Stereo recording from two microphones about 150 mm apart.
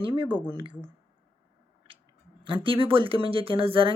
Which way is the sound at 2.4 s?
35° right (ahead or behind).